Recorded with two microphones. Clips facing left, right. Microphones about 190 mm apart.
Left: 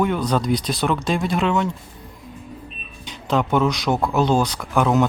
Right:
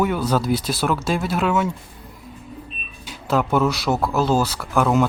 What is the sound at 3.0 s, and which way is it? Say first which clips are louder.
Speech: even; 5° right (ahead or behind).